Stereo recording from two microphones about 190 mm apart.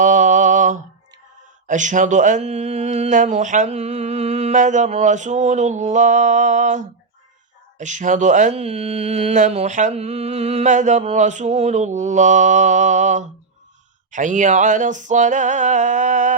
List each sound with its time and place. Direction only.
0.0 s mantra: 40° right (ahead or behind)
1.6 s speech: 40° right (ahead or behind)